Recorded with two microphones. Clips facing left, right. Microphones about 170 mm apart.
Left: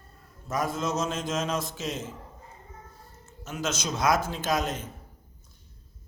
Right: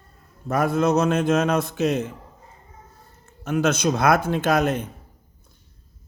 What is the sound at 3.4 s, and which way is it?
A man's voice, 60° right (ahead or behind).